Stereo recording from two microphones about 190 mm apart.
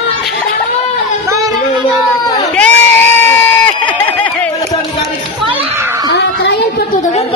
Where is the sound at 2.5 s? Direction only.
10° left (ahead or behind).